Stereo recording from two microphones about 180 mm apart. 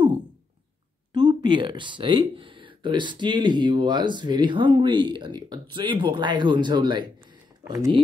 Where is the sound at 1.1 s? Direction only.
25° right (ahead or behind).